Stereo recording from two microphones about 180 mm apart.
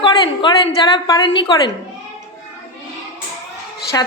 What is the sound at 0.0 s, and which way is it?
A woman's voice, 25° left (ahead or behind).